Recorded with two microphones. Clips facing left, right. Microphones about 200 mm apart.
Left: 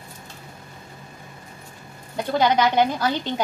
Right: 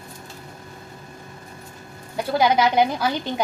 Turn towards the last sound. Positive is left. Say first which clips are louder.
# even
turn(degrees=-10)  # may be behind; listen again after turning